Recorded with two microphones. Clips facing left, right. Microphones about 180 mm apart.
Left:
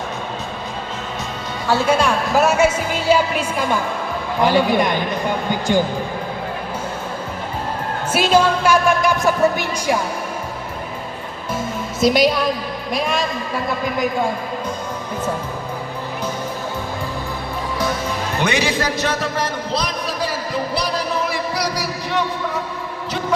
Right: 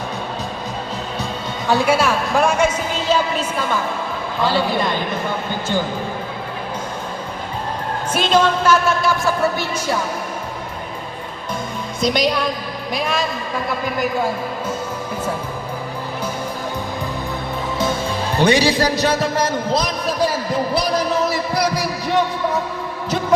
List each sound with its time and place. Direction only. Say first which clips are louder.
1.6 s a woman's voice: even; 15° right (ahead or behind); by 5.8 s 15° left (ahead or behind)
8.1 s a woman's voice: left 1 dB; 10° left (ahead or behind)
11.9 s a woman's voice: left 3 dB; 5° left (ahead or behind)
18.3 s a man's voice: right 5 dB; 35° right (ahead or behind)
21.2 s music: right 3 dB; 55° right (ahead or behind)